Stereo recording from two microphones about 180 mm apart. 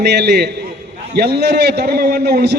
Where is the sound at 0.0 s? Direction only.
70° right (ahead or behind).